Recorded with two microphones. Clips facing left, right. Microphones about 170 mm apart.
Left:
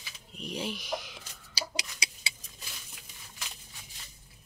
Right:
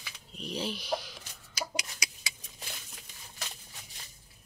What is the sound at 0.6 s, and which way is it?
Speech, 50° left (ahead or behind).